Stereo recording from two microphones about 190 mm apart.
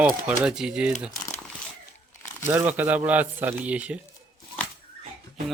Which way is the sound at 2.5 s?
10° right (ahead or behind).